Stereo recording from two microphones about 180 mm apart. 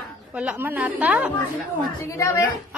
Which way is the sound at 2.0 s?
15° left (ahead or behind).